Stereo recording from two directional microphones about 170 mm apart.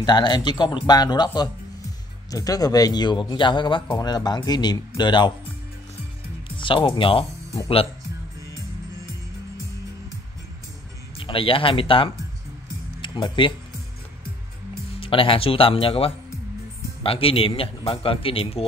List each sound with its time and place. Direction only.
0.0 s speech: 25° left (ahead or behind)
6.5 s speech: 30° left (ahead or behind)
11.1 s speech: 30° left (ahead or behind)
15.0 s speech: 30° left (ahead or behind)